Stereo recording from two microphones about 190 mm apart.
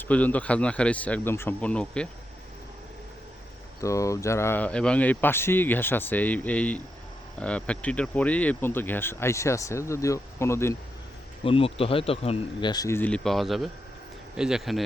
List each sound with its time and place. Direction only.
0.1 s speech: 5° left (ahead or behind)
3.8 s speech: 15° left (ahead or behind)
11.4 s speech: 30° left (ahead or behind); by 14.8 s centre (ahead or behind)